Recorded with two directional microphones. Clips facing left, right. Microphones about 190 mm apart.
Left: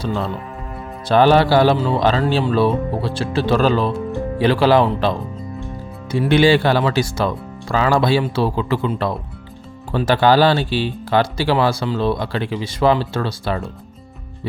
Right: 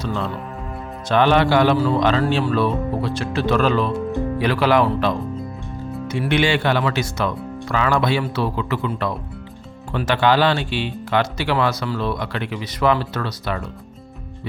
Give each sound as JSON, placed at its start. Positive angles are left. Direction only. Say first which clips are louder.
{"t": 0.0, "sound": "speech", "louder": "left 2 dB", "side_deg": 30}